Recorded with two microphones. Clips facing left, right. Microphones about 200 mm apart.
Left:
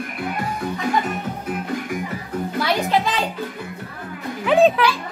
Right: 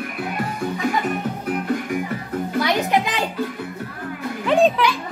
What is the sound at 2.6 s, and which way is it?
Music, 15° right (ahead or behind).